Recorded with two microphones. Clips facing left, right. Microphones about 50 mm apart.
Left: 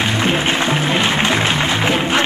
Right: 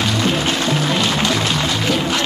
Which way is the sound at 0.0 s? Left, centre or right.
Left.